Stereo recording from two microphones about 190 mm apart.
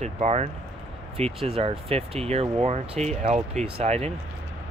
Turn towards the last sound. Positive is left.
turn(degrees=-35)  # may be behind; listen again after turning